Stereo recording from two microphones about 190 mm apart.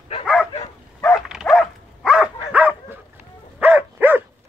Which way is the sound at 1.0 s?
Centre (ahead or behind).